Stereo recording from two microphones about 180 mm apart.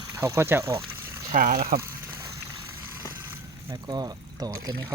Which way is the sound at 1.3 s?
40° right (ahead or behind).